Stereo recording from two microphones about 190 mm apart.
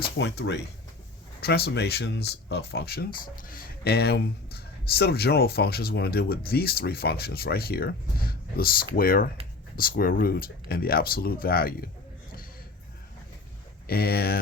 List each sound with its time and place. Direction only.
0.2 s speech: 65° left (ahead or behind)
13.8 s speech: 55° left (ahead or behind)